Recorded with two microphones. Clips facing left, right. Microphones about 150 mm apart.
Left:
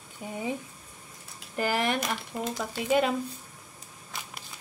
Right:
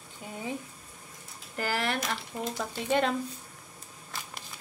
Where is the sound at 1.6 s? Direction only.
15° left (ahead or behind).